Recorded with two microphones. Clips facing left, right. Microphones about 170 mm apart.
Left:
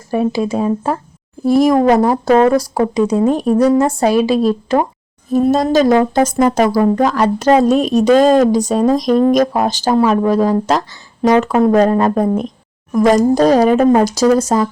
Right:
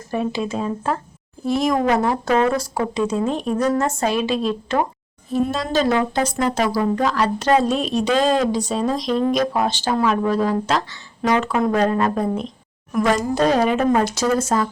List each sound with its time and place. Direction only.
0.3 s speech: 35° left (ahead or behind)
1.7 s speech: 35° left (ahead or behind)